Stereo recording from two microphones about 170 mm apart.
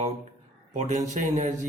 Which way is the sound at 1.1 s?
45° right (ahead or behind).